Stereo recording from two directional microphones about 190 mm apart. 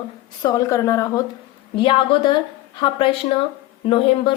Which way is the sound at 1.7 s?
25° left (ahead or behind).